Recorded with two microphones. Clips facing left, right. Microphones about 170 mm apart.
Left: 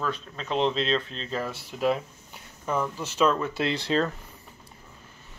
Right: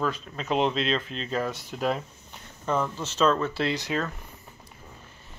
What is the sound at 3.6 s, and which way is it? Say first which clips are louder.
Speech: left 2 dB; 25° left (ahead or behind).